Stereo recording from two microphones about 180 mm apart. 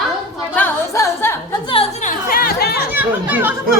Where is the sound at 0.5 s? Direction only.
15° left (ahead or behind).